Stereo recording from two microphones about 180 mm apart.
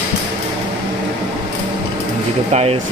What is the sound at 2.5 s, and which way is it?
Speech, 35° right (ahead or behind).